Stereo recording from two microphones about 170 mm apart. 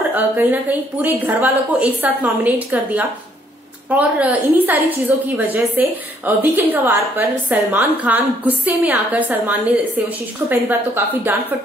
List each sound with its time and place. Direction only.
0.1 s a woman's voice: 10° right (ahead or behind)